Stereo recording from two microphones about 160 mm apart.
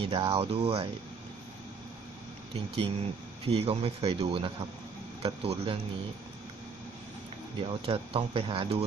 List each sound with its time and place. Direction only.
0.0 s speech: 35° right (ahead or behind)
2.5 s speech: 35° right (ahead or behind)
7.5 s speech: 35° right (ahead or behind)